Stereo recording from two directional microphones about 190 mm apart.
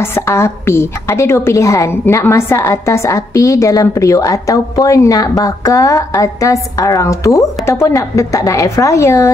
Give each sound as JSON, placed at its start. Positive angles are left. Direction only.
{"t": 0.0, "sound": "a woman's voice", "side_deg": 15}